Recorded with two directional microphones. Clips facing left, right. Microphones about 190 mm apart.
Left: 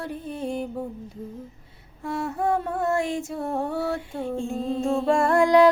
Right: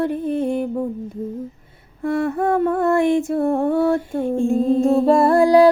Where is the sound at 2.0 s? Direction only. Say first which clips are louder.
Right 7 dB; 55° right (ahead or behind); by 5.7 s 35° right (ahead or behind).